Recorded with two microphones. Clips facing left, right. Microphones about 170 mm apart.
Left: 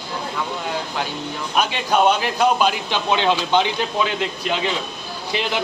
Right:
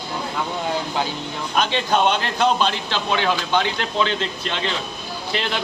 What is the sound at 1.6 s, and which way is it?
Speech, 10° left (ahead or behind).